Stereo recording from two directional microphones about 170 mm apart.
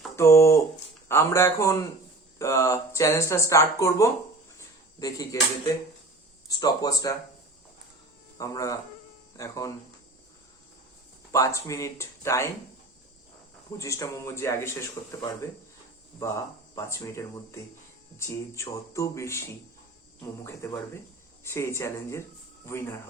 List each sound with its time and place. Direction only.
0.2 s speech: 15° left (ahead or behind)
8.4 s speech: 20° left (ahead or behind)
11.3 s speech: 20° left (ahead or behind)
13.7 s speech: 15° left (ahead or behind)
20.4 s speech: 15° left (ahead or behind)